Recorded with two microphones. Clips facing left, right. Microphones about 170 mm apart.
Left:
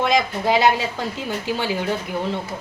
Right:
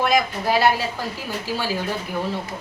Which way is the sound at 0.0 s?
20° left (ahead or behind).